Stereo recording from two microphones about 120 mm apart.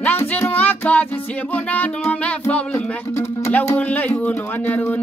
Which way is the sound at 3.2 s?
20° left (ahead or behind).